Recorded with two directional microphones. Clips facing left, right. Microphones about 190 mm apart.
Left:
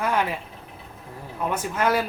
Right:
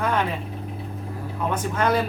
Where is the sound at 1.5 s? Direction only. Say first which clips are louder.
Right 1 dB; 5° left (ahead or behind).